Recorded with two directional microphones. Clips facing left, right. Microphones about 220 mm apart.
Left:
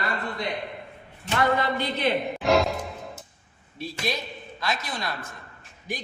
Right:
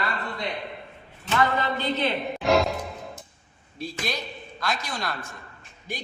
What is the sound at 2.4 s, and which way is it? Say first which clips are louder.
Music: right 1 dB; centre (ahead or behind).